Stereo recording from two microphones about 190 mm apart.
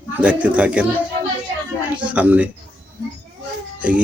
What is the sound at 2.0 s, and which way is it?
Speech, 5° right (ahead or behind).